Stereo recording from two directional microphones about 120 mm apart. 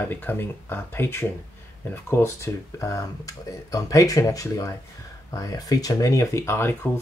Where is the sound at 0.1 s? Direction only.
15° left (ahead or behind).